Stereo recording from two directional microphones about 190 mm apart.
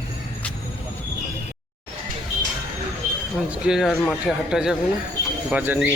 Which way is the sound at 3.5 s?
5° right (ahead or behind).